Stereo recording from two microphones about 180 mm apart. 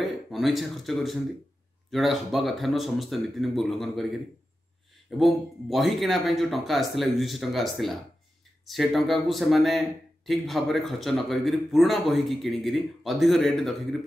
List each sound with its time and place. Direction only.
0.0 s speech: centre (ahead or behind)
5.2 s speech: centre (ahead or behind)